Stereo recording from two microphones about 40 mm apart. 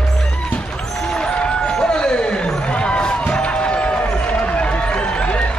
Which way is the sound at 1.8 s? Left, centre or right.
Centre.